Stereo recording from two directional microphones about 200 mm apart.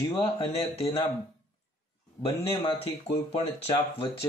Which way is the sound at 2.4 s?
30° left (ahead or behind).